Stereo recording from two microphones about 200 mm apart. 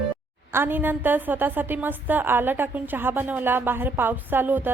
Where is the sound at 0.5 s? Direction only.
10° right (ahead or behind).